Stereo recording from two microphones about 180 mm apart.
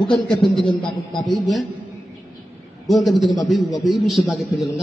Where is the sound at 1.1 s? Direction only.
Centre (ahead or behind).